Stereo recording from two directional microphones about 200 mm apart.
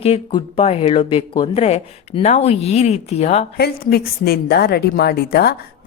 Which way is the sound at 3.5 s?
50° left (ahead or behind).